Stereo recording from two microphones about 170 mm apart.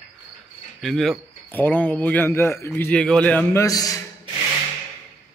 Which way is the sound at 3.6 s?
20° left (ahead or behind).